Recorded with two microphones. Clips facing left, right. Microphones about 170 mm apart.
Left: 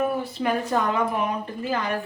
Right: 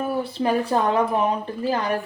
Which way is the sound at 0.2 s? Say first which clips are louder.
Right 3 dB; 30° right (ahead or behind).